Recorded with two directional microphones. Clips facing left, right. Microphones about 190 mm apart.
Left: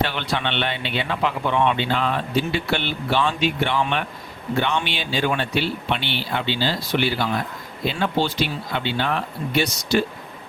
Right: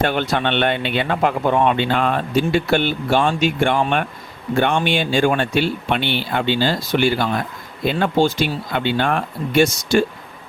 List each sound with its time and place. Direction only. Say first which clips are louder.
0.0 s speech: right 5 dB; 45° right (ahead or behind)